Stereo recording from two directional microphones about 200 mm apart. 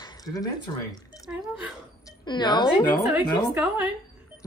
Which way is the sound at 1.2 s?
5° right (ahead or behind).